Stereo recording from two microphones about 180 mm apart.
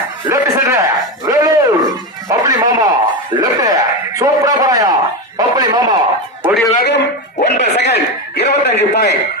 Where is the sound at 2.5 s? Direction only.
20° right (ahead or behind).